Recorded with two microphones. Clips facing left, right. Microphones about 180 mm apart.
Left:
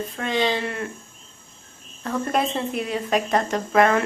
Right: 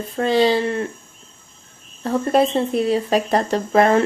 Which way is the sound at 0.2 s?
35° right (ahead or behind).